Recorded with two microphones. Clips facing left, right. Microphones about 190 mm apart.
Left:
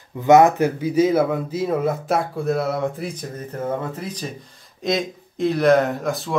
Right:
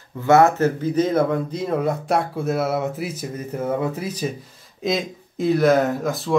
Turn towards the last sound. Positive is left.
turn(degrees=0)  # may be behind; listen again after turning